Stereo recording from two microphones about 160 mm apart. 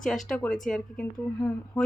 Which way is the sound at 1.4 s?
15° left (ahead or behind).